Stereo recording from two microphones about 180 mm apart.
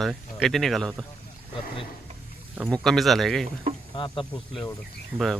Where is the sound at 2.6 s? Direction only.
Centre (ahead or behind).